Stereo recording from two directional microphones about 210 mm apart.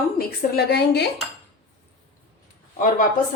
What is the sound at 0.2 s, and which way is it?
Speech, 50° left (ahead or behind).